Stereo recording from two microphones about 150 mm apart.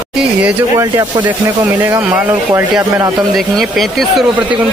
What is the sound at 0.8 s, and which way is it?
Speech, 25° right (ahead or behind).